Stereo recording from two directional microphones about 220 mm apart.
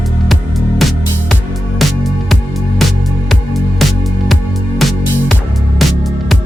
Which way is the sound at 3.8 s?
Centre (ahead or behind).